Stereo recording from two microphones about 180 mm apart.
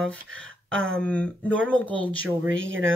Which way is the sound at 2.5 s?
90° right.